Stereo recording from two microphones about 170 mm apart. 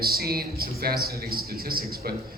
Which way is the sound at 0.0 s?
65° right (ahead or behind).